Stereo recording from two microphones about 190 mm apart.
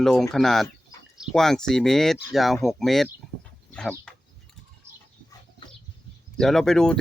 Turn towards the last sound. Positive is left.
turn(degrees=5)  # may be behind; listen again after turning